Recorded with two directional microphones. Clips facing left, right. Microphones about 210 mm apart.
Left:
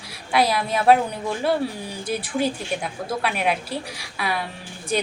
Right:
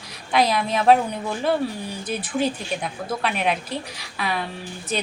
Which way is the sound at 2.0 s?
10° left (ahead or behind).